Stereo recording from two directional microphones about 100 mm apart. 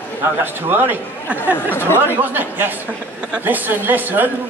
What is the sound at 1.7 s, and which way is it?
Speech, 20° left (ahead or behind).